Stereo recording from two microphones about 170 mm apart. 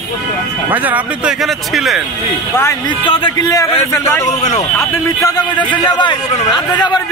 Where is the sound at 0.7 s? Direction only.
10° right (ahead or behind).